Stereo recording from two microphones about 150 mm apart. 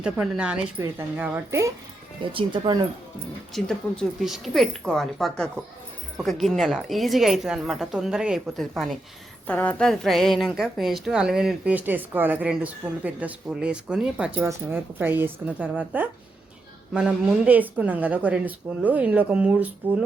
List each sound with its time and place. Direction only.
0.0 s speech: 5° right (ahead or behind)
2.2 s speech: 35° right (ahead or behind)
3.5 s a woman's voice: centre (ahead or behind)